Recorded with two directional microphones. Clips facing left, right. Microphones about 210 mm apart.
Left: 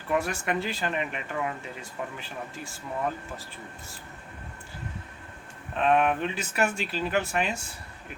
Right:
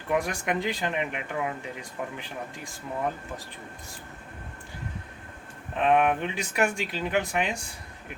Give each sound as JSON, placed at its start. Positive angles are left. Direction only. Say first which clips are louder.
{"t": 0.1, "sound": "speech", "louder": "right 1 dB", "side_deg": -15}
{"t": 5.7, "sound": "speech", "louder": "right 1 dB", "side_deg": -15}